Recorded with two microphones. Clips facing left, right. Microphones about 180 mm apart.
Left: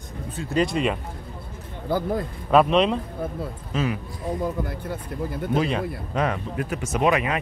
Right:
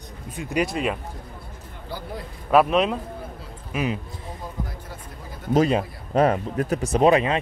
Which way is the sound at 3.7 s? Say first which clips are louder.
Even; 15° right (ahead or behind).